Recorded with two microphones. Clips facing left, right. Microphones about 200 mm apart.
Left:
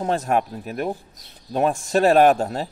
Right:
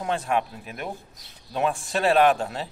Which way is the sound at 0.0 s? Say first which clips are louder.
Left 4 dB; 40° left (ahead or behind).